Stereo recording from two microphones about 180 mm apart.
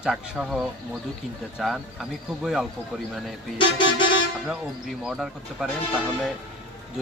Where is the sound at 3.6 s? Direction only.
25° left (ahead or behind).